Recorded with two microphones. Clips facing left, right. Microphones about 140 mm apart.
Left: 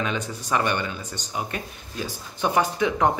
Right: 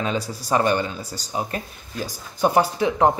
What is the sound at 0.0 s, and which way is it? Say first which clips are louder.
Speech: right 2 dB; 35° right (ahead or behind).